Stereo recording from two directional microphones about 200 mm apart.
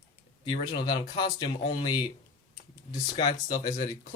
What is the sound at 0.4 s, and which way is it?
Speech, 25° left (ahead or behind).